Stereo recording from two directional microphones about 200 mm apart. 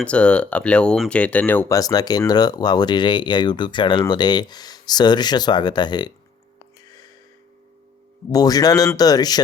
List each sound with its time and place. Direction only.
0.0 s speech: 5° left (ahead or behind); by 6.1 s 20° left (ahead or behind)
8.3 s speech: 20° left (ahead or behind)